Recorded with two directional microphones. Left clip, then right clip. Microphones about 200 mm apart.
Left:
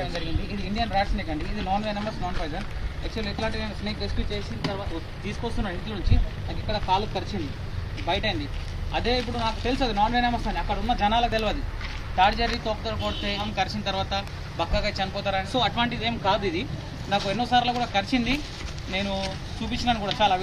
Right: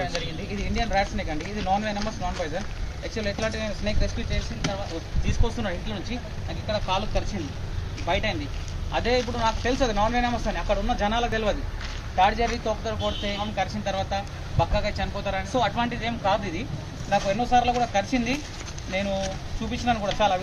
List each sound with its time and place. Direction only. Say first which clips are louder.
0.7 s speech: even; 15° right (ahead or behind)
3.3 s speech: right 3 dB; 20° right (ahead or behind)
6.7 s speech: left 1 dB; 20° right (ahead or behind)
8.1 s speech: even; 5° right (ahead or behind)